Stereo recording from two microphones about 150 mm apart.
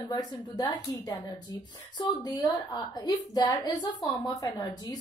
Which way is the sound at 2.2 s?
25° left (ahead or behind).